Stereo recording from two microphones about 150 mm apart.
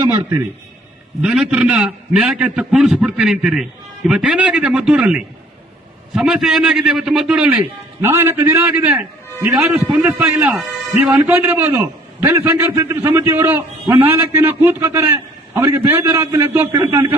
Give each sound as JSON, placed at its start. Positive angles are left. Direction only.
{"t": 0.0, "sound": "a man's voice", "side_deg": -15}
{"t": 1.2, "sound": "a man's voice", "side_deg": -5}